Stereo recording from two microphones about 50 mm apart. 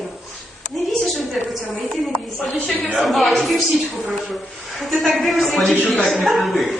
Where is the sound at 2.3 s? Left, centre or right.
Left.